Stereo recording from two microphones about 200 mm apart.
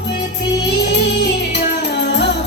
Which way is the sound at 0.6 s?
60° left (ahead or behind).